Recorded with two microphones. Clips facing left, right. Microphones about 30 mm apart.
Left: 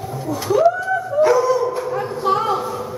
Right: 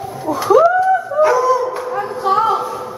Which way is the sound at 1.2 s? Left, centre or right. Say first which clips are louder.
Right 1 dB; centre.